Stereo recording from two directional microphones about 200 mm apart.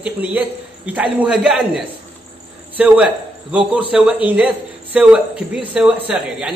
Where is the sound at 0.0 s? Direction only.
5° right (ahead or behind).